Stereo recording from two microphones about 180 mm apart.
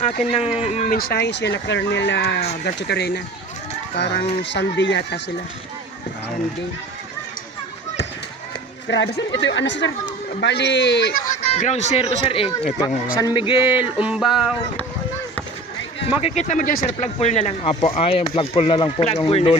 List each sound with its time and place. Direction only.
0.3 s speech: 30° left (ahead or behind)
0.9 s speech: 60° left (ahead or behind); by 5.2 s 75° left (ahead or behind)
8.9 s speech: 75° left (ahead or behind)
9.4 s speech: 90° left
10.4 s speech: 70° left (ahead or behind)
11.4 s speech: 40° left (ahead or behind)
13.1 s speech: 20° left (ahead or behind)
14.0 s speech: 5° right (ahead or behind)
16.2 s speech: 40° left (ahead or behind)